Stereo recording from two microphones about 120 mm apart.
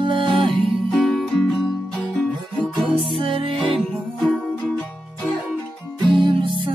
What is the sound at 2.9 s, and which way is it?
Music, 50° right (ahead or behind).